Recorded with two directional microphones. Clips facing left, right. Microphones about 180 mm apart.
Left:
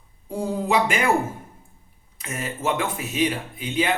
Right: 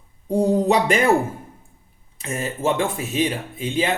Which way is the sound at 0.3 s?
35° right (ahead or behind).